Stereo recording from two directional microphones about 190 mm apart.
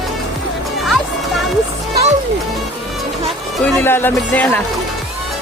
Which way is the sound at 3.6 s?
10° left (ahead or behind).